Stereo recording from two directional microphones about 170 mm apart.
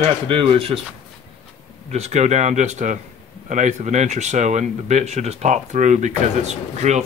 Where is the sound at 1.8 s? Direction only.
40° right (ahead or behind).